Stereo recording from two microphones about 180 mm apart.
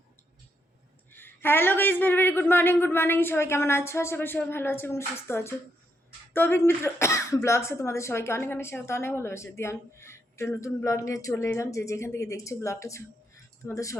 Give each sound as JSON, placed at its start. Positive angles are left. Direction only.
{"t": 1.1, "sound": "speech", "side_deg": 10}